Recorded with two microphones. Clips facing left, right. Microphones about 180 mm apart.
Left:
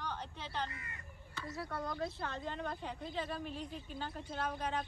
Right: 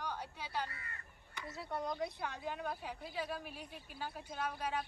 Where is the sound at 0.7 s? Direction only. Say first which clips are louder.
Left 1 dB; 15° left (ahead or behind).